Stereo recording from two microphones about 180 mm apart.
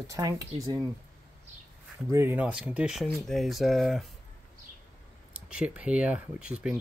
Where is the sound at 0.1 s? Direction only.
20° right (ahead or behind).